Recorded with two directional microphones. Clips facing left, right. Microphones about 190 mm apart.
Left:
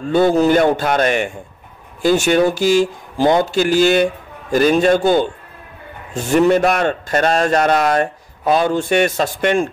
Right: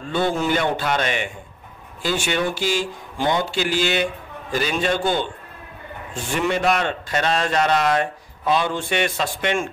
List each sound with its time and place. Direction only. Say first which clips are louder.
0.1 s a man's voice: left 8 dB; 40° left (ahead or behind)